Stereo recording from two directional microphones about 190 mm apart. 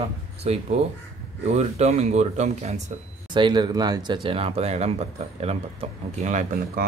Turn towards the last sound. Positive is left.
turn(degrees=-40)  # may be behind; listen again after turning